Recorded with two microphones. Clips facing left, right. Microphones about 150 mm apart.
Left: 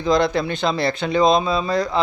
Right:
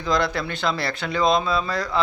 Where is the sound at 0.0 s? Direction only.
20° left (ahead or behind).